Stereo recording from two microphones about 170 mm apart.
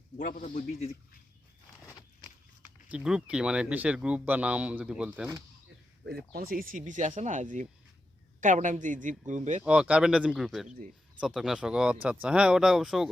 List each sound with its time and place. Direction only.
0.2 s a man's voice: 50° left (ahead or behind)
1.8 s walk: 20° left (ahead or behind)
2.9 s speech: 5° right (ahead or behind)
6.3 s speech: 60° right (ahead or behind)
9.6 s speech: 5° right (ahead or behind)